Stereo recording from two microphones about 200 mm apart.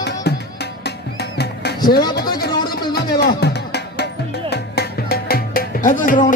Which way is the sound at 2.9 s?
50° left (ahead or behind).